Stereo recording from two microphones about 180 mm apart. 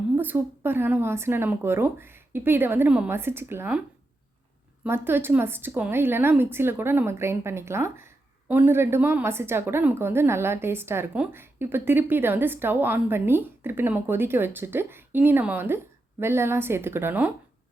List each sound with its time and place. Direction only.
0.2 s a woman's voice: 10° right (ahead or behind)